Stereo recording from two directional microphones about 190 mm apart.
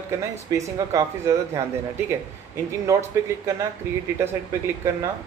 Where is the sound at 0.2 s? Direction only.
15° right (ahead or behind).